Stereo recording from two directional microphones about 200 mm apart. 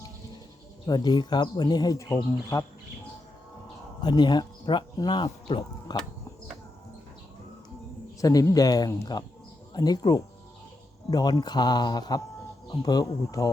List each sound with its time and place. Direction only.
0.9 s a man's voice: 20° left (ahead or behind)
4.0 s speech: 20° left (ahead or behind)
8.2 s a man's voice: 15° left (ahead or behind)